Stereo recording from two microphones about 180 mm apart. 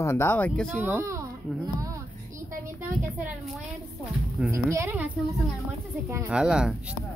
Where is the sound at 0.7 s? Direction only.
10° right (ahead or behind).